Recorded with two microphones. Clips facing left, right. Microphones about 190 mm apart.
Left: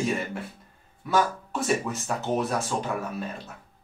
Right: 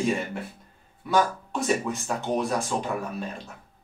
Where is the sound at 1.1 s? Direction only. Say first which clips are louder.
Right 1 dB; centre (ahead or behind).